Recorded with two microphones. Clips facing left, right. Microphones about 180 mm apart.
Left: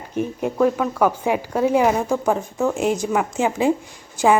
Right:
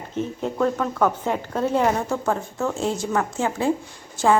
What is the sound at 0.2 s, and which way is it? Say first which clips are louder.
A woman's voice: left 4 dB; 10° left (ahead or behind).